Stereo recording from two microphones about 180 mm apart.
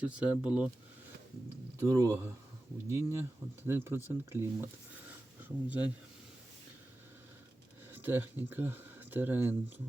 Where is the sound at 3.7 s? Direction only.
15° right (ahead or behind).